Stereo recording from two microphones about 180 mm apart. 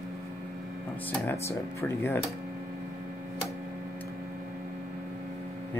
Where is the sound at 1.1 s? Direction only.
15° left (ahead or behind).